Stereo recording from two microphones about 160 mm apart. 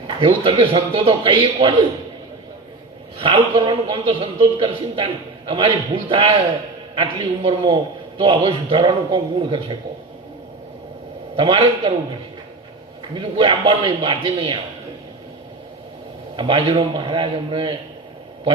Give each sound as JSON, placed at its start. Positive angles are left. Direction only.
{"t": 0.2, "sound": "a man's voice", "side_deg": -35}
{"t": 3.2, "sound": "a man's voice", "side_deg": -35}
{"t": 11.3, "sound": "a man's voice", "side_deg": -35}
{"t": 13.1, "sound": "a man's voice", "side_deg": -30}
{"t": 16.4, "sound": "a man's voice", "side_deg": -35}